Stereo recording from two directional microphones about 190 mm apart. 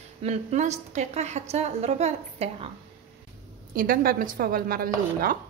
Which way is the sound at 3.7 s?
50° right (ahead or behind).